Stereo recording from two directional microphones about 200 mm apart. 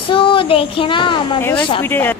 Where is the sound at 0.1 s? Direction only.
25° left (ahead or behind).